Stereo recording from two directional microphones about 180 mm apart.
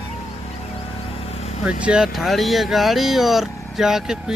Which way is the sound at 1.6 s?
5° right (ahead or behind).